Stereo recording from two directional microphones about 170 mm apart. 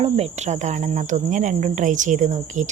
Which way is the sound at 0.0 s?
40° right (ahead or behind).